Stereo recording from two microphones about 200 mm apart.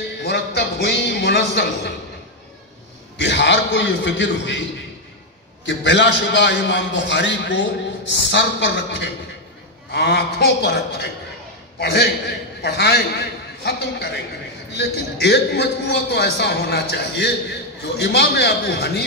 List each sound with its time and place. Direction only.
0.2 s a man's voice: 55° left (ahead or behind)
3.2 s a man's voice: 60° left (ahead or behind)
5.7 s a man's voice: 65° left (ahead or behind)